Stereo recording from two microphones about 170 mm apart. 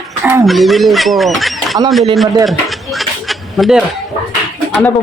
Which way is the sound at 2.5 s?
Centre (ahead or behind).